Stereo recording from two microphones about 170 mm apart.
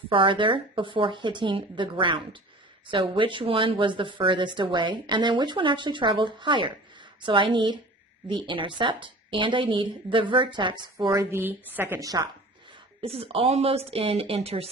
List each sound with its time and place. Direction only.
0.1 s a woman's voice: 30° right (ahead or behind)
13.0 s speech: 35° right (ahead or behind)